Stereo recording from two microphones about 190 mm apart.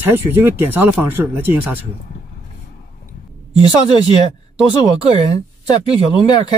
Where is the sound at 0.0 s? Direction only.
10° right (ahead or behind).